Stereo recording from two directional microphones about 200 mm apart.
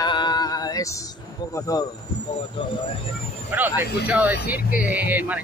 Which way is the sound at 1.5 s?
20° left (ahead or behind).